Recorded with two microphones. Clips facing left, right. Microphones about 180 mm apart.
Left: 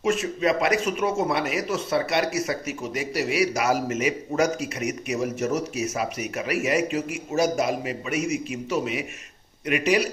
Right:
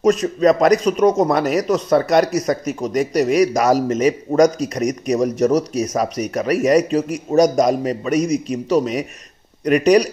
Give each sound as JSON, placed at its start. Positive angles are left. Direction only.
{"t": 0.0, "sound": "speech", "side_deg": -40}